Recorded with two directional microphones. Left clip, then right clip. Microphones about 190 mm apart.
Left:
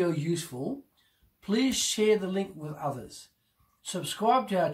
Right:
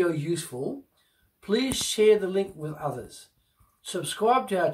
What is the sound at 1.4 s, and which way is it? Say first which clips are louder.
Speech: right 2 dB; centre (ahead or behind).